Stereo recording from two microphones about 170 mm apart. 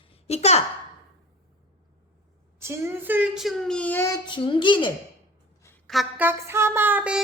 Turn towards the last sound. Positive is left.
turn(degrees=-10)  # may be behind; listen again after turning